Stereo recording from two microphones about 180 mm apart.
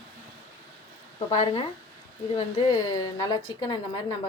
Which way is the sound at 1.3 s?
40° left (ahead or behind).